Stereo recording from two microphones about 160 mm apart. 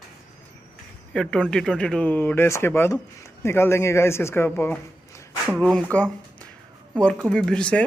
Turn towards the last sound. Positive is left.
turn(degrees=5)  # may be behind; listen again after turning